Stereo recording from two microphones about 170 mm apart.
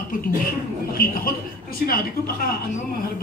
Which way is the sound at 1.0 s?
55° left (ahead or behind).